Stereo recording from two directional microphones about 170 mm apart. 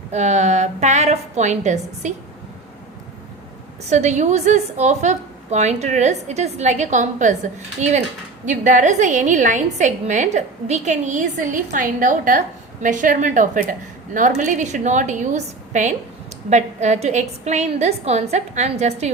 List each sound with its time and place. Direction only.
0.1 s a woman's voice: 45° right (ahead or behind)
3.8 s a woman's voice: 40° right (ahead or behind)